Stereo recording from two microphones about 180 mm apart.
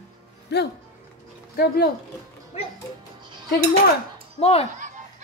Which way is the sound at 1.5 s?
60° left (ahead or behind).